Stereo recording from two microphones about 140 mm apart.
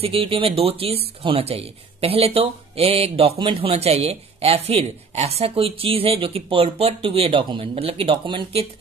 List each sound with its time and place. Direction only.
0.0 s speech: 40° right (ahead or behind)